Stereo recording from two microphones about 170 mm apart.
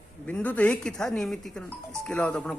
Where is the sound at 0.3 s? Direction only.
10° left (ahead or behind).